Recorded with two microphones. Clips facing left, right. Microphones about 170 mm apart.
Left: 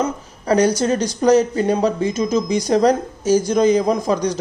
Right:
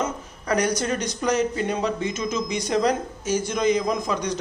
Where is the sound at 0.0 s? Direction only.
30° left (ahead or behind).